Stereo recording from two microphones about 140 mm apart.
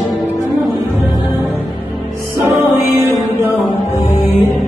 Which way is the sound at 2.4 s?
15° right (ahead or behind).